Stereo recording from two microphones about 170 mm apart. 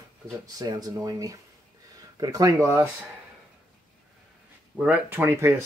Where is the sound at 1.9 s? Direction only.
20° right (ahead or behind).